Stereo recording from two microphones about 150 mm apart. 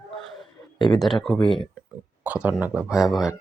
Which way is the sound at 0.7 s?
30° left (ahead or behind).